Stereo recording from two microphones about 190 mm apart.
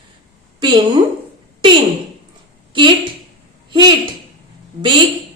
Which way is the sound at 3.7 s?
25° right (ahead or behind).